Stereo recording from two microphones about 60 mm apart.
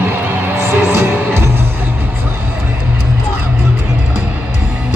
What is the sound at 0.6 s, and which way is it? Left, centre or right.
Music, right.